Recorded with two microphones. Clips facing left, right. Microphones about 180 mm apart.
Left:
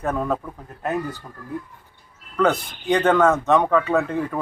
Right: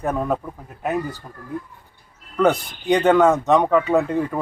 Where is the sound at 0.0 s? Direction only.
10° right (ahead or behind).